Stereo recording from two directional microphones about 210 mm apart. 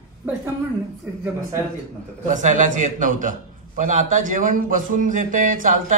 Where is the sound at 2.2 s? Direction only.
35° right (ahead or behind).